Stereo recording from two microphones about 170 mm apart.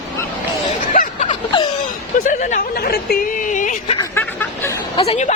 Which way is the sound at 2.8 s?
65° left (ahead or behind).